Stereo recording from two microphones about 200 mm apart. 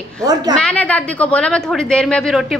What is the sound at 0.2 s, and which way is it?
Speech, 20° right (ahead or behind).